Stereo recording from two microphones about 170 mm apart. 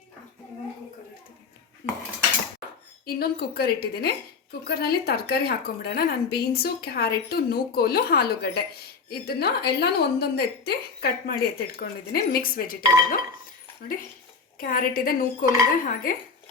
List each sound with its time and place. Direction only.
3.1 s a woman's voice: 65° left (ahead or behind)